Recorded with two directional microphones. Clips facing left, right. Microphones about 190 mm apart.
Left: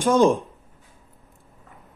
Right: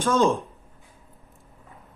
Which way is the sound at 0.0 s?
15° left (ahead or behind).